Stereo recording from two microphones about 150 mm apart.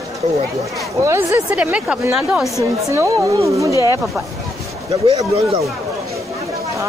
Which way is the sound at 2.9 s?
20° right (ahead or behind).